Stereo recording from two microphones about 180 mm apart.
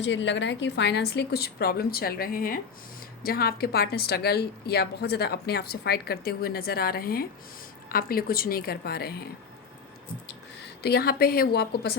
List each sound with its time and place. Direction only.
0.0 s a woman's voice: 85° left; by 9.1 s 60° left (ahead or behind)
10.8 s a woman's voice: 60° left (ahead or behind)